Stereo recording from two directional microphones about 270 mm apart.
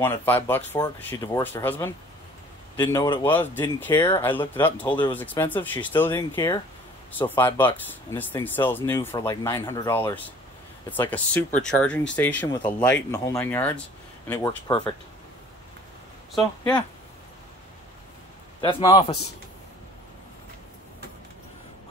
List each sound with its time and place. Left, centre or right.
0.0 s speech: centre
12.4 s speech: centre
18.6 s a man's voice: centre